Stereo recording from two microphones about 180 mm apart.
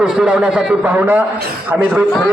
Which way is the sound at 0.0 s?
5° right (ahead or behind).